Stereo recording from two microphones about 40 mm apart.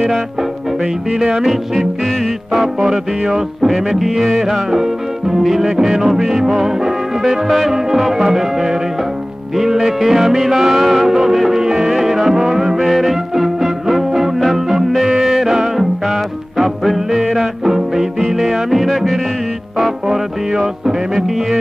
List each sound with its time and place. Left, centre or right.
1.1 s music: centre
15.0 s yodeling: centre
17.3 s music: centre